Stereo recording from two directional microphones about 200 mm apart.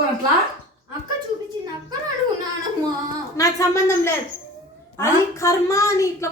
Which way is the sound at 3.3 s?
15° left (ahead or behind).